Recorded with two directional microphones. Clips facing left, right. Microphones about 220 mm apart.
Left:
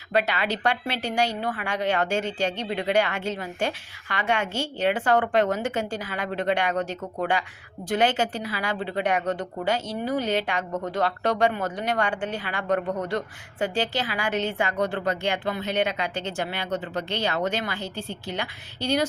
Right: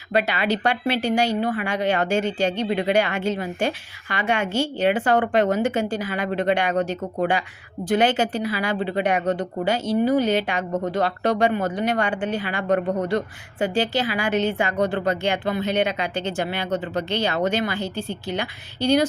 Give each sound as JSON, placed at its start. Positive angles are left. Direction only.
{"t": 0.1, "sound": "speech", "side_deg": -10}